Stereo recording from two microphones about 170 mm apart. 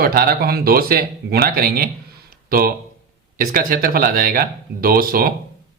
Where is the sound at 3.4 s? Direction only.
55° right (ahead or behind).